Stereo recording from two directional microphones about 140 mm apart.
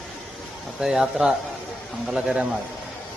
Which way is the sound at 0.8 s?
5° right (ahead or behind).